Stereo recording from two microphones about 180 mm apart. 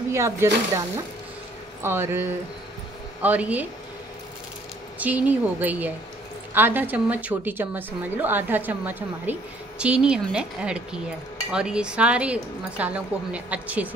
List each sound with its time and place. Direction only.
0.1 s a woman's voice: 15° right (ahead or behind)
1.8 s a woman's voice: 15° right (ahead or behind)
4.9 s a woman's voice: 10° right (ahead or behind)